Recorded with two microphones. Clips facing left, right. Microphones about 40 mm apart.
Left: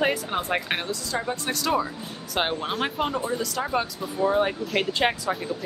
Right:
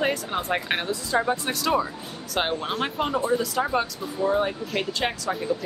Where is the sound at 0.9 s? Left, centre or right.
Centre.